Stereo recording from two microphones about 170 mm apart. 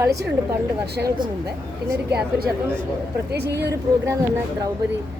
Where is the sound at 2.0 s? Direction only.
70° right (ahead or behind).